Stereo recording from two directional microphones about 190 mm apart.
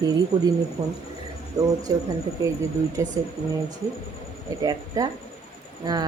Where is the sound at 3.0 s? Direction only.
15° right (ahead or behind).